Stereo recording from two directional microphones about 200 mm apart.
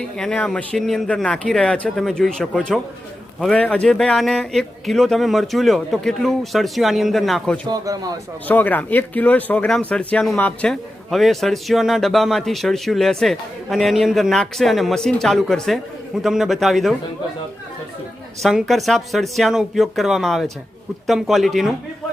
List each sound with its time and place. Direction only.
0.2 s speech: 5° left (ahead or behind)
7.7 s speech: 20° right (ahead or behind)
8.4 s speech: 10° left (ahead or behind)
18.4 s speech: centre (ahead or behind)